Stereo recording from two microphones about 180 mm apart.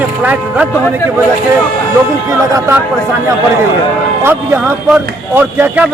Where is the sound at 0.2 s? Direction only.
10° right (ahead or behind).